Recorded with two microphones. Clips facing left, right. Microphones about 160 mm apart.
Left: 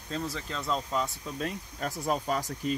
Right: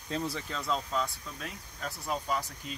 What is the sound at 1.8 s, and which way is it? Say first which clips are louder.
Speech: left 5 dB; 55° left (ahead or behind).